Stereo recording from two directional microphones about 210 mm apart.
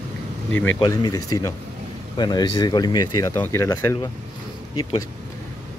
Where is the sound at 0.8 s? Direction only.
20° left (ahead or behind).